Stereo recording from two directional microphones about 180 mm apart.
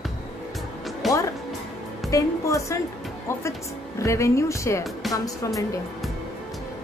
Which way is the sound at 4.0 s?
15° left (ahead or behind).